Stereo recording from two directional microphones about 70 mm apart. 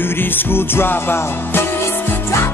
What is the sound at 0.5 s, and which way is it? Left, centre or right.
Music, left.